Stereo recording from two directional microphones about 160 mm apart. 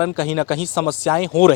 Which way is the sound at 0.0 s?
10° left (ahead or behind).